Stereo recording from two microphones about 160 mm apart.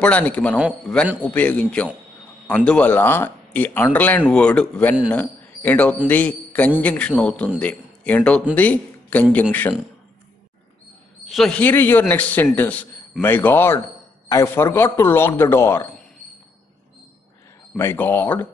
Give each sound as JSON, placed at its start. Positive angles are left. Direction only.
{"t": 0.0, "sound": "speech", "side_deg": 10}
{"t": 11.2, "sound": "speech", "side_deg": 0}
{"t": 17.7, "sound": "speech", "side_deg": 10}